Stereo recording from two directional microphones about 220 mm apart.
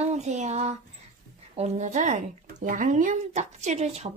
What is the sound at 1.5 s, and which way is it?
Speech, 30° right (ahead or behind).